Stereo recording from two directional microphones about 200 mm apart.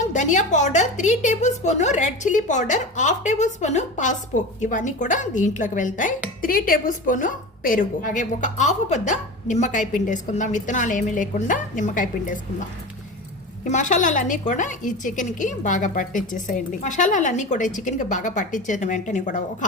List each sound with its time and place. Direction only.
0.0 s speech: 35° left (ahead or behind)
13.7 s speech: 40° left (ahead or behind)